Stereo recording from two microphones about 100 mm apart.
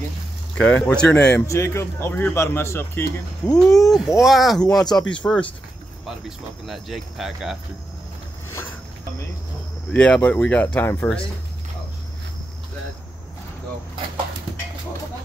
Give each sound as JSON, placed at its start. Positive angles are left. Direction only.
{"t": 0.6, "sound": "speech", "side_deg": 15}
{"t": 1.5, "sound": "speech", "side_deg": 30}
{"t": 3.6, "sound": "speech", "side_deg": 35}
{"t": 4.2, "sound": "speech", "side_deg": 0}
{"t": 6.0, "sound": "speech", "side_deg": -5}
{"t": 9.9, "sound": "speech", "side_deg": 10}